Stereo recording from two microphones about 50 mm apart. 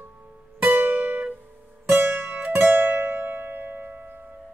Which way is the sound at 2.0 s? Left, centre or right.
Right.